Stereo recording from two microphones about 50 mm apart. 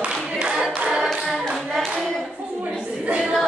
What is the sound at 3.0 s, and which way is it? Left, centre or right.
Singing, right.